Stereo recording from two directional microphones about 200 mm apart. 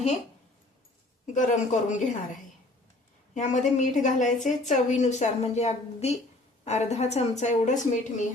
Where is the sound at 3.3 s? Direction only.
35° left (ahead or behind).